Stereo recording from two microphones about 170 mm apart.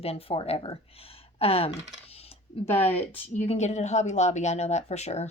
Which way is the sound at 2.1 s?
35° left (ahead or behind).